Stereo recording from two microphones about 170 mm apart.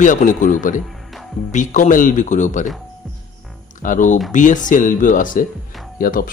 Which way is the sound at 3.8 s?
50° left (ahead or behind).